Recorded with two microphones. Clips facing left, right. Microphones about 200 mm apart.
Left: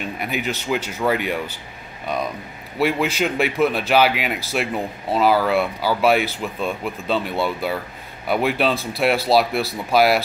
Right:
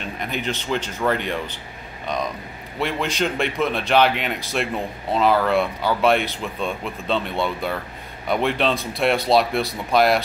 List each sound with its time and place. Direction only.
0.0 s speech: 5° left (ahead or behind)
2.8 s a man's voice: 5° left (ahead or behind)